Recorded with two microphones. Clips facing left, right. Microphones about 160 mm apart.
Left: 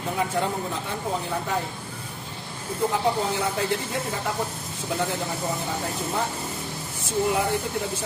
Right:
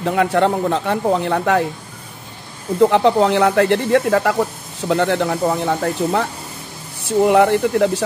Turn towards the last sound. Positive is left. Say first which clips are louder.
# right 11 dB
turn(degrees=-70)  # may be behind; listen again after turning